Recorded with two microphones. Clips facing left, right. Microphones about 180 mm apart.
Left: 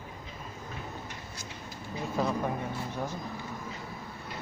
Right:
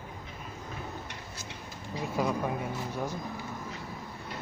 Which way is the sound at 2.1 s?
10° right (ahead or behind).